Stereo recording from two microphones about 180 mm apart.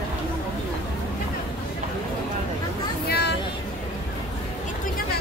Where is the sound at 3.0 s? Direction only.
65° left (ahead or behind).